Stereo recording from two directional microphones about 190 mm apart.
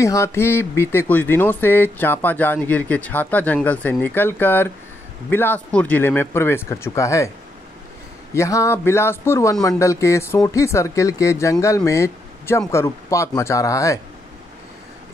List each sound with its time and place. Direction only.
0.0 s speech: 15° left (ahead or behind)
8.4 s speech: 15° left (ahead or behind)